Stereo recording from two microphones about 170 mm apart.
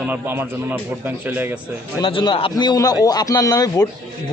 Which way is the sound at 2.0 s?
30° left (ahead or behind).